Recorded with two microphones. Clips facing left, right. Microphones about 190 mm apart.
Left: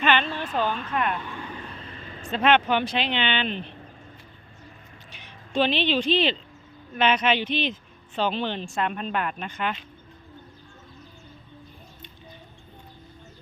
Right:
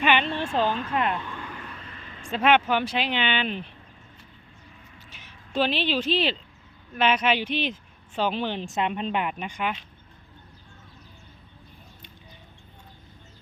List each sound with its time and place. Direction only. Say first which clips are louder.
0.0 s a sound: even; 15° right (ahead or behind)
0.3 s speech: right 2 dB; 25° right (ahead or behind)
1.5 s vehicle: left 2 dB; 30° left (ahead or behind)
2.2 s speech: even; 10° right (ahead or behind)
5.1 s speech: left 2 dB; 5° right (ahead or behind)